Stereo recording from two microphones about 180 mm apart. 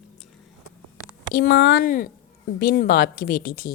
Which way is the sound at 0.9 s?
20° left (ahead or behind).